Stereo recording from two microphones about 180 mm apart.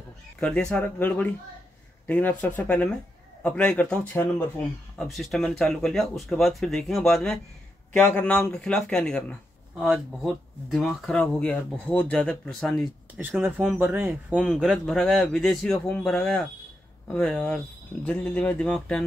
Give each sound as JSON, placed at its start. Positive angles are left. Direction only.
{"t": 0.4, "sound": "speech", "side_deg": 5}